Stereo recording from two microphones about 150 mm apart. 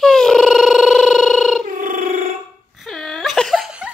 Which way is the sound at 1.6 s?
60° right (ahead or behind).